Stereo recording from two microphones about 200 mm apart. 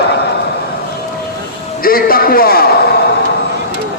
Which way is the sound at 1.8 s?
45° left (ahead or behind).